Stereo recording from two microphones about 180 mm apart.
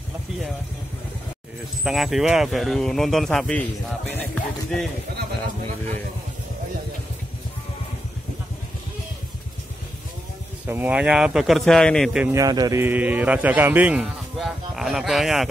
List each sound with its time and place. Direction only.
1.9 s speech: centre (ahead or behind)
10.7 s speech: 10° right (ahead or behind)
12.4 s speech: 20° right (ahead or behind); by 15.4 s centre (ahead or behind)